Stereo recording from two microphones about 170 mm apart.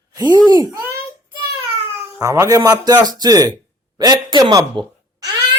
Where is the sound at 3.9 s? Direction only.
25° right (ahead or behind).